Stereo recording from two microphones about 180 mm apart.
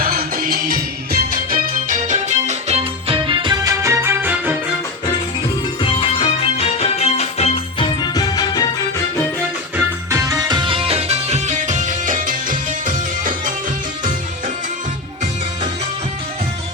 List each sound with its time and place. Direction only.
0.0 s music: 55° right (ahead or behind); by 4.5 s 10° right (ahead or behind)
5.8 s music: 30° left (ahead or behind)
9.7 s music: 15° right (ahead or behind); by 13.5 s 50° right (ahead or behind)